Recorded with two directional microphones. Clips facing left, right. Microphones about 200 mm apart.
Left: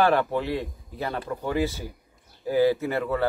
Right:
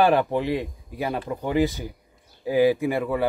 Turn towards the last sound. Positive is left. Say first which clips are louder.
# right 2 dB
turn(degrees=-15)  # may be behind; listen again after turning